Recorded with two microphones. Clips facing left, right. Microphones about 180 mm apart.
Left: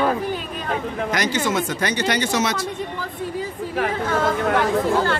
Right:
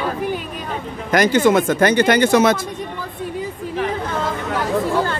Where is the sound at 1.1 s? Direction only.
55° right (ahead or behind).